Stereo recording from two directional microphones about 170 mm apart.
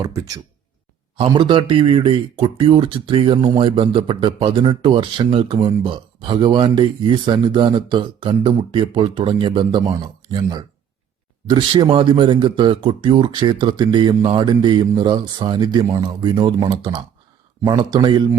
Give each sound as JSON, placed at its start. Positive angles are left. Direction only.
{"t": 0.0, "sound": "speech", "side_deg": -20}
{"t": 11.4, "sound": "speech", "side_deg": -25}